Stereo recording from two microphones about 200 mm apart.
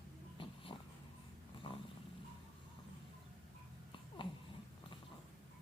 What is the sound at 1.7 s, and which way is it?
Dog, 25° left (ahead or behind).